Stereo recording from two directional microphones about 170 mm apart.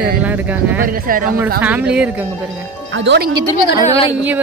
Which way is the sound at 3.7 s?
20° right (ahead or behind).